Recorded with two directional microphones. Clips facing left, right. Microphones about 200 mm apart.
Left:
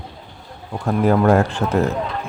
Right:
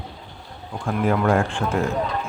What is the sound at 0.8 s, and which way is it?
Speech, 40° left (ahead or behind).